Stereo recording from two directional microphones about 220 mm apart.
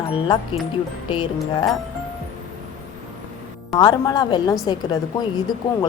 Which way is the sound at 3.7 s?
20° left (ahead or behind).